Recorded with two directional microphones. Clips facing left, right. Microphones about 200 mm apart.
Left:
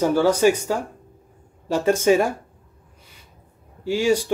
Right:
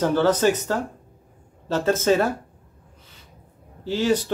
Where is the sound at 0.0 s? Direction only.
10° left (ahead or behind).